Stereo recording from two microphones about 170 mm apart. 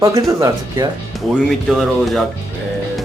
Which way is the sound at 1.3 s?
Centre (ahead or behind).